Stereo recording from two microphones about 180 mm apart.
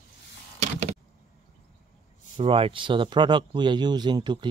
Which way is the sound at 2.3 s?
30° right (ahead or behind).